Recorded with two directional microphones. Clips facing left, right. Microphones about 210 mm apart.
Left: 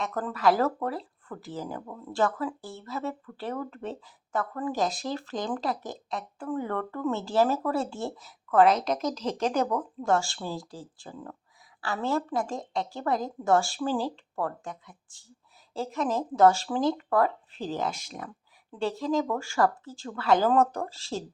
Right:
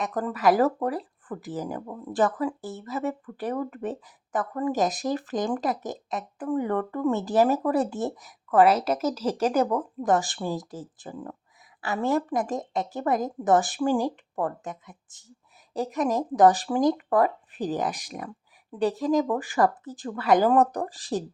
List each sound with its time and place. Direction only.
0.0 s speech: 15° right (ahead or behind)